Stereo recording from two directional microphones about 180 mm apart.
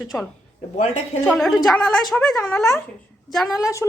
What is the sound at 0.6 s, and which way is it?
Speech, 40° left (ahead or behind).